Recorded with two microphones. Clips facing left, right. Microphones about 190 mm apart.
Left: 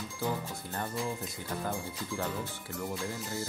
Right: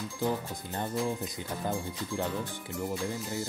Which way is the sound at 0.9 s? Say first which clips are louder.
Right 5 dB; centre (ahead or behind).